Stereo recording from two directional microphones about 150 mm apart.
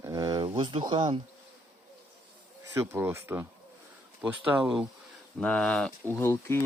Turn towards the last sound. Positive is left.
turn(degrees=15)  # may be behind; listen again after turning